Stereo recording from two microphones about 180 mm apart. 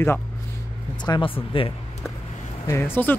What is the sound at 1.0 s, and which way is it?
Speech, 25° left (ahead or behind).